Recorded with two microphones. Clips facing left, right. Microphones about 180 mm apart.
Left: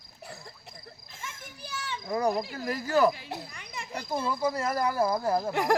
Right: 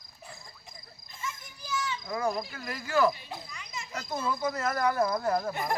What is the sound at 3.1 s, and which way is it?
Speech, 75° left (ahead or behind).